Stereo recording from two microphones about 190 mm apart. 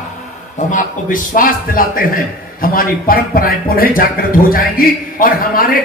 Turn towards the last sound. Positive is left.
turn(degrees=50)  # may be behind; listen again after turning